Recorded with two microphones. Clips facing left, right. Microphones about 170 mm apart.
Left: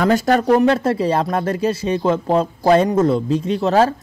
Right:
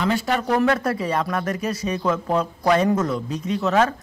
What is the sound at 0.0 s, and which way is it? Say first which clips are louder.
Speech: left 7 dB; 45° left (ahead or behind).